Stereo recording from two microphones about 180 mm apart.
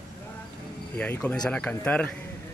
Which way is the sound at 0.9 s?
10° left (ahead or behind).